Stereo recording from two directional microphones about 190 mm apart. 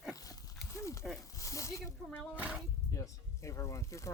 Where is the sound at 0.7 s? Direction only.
15° left (ahead or behind).